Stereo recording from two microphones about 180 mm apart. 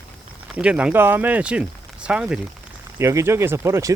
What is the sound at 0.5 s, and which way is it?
Speech, 5° right (ahead or behind).